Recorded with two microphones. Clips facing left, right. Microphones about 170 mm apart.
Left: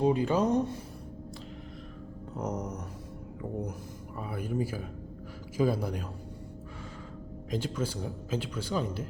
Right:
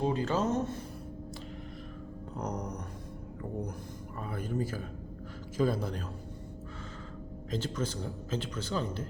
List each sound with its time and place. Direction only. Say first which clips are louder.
0.0 s speech: left 4 dB; 15° left (ahead or behind)
2.3 s speech: left 2 dB; 5° left (ahead or behind)
4.2 s speech: left 2 dB; 10° left (ahead or behind)
7.5 s speech: left 2 dB; 10° left (ahead or behind)